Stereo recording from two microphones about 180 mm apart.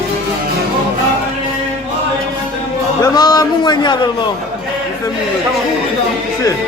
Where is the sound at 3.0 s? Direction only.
20° left (ahead or behind).